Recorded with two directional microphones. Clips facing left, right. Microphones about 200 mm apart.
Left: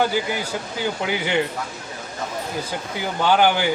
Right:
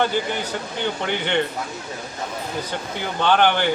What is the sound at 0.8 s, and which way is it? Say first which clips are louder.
Speech: left 1 dB; 5° left (ahead or behind).